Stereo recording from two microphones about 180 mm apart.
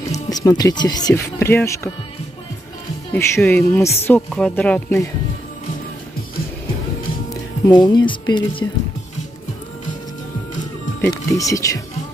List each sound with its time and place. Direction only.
0.3 s speech: 20° left (ahead or behind)
3.1 s a woman's voice: 10° left (ahead or behind)
7.6 s speech: 25° left (ahead or behind)
11.0 s speech: 20° left (ahead or behind)